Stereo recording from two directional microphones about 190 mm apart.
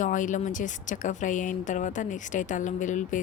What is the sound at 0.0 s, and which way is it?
A woman's voice, 40° left (ahead or behind).